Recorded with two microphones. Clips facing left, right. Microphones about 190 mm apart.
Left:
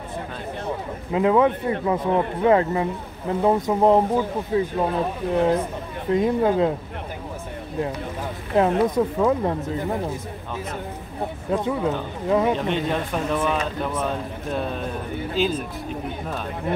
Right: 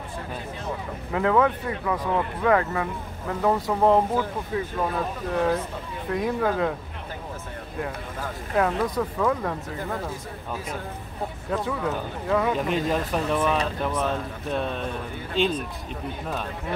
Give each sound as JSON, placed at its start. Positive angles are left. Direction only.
{"t": 1.1, "sound": "speech", "side_deg": 20}
{"t": 8.5, "sound": "speech", "side_deg": 25}
{"t": 11.5, "sound": "speech", "side_deg": 20}
{"t": 12.5, "sound": "a man's voice", "side_deg": -5}